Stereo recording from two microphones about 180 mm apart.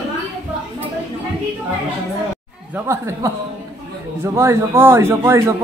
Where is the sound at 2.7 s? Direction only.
15° right (ahead or behind).